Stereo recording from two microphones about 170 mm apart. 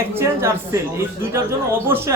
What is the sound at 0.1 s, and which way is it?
A man's voice, 15° right (ahead or behind).